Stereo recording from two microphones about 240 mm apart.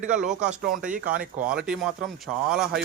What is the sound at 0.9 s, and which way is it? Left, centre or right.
Speech, right.